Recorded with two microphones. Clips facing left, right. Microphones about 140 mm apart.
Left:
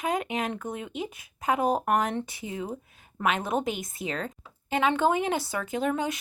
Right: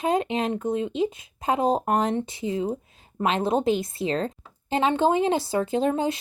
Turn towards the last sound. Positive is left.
turn(degrees=-30)  # may be behind; listen again after turning